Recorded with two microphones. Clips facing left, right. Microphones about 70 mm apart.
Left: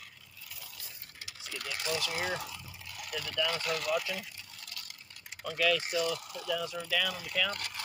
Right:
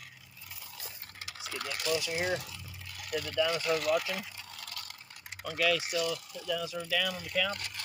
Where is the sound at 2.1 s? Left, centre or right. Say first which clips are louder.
Right 2 dB; centre.